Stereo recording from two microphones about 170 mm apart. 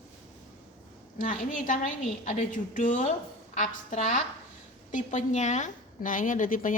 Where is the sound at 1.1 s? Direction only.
50° left (ahead or behind).